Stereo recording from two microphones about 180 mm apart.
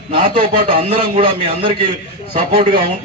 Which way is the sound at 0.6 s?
30° right (ahead or behind).